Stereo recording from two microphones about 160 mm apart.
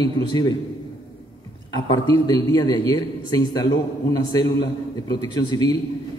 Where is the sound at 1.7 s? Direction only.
25° left (ahead or behind).